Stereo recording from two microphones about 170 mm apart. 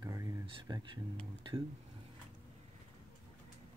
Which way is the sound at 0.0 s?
20° right (ahead or behind).